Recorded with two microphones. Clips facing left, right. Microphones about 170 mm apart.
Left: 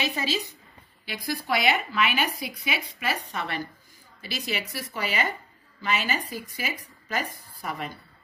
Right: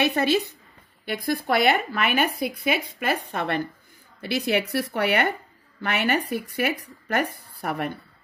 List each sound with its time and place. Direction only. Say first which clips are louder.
0.0 s speech: right 7 dB; 60° right (ahead or behind)